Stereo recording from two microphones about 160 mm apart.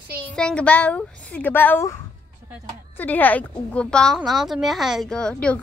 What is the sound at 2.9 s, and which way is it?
A woman's voice, 10° left (ahead or behind).